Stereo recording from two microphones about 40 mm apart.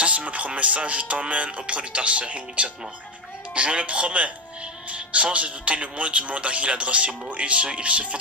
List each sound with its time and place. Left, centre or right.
0.0 s a man's voice: right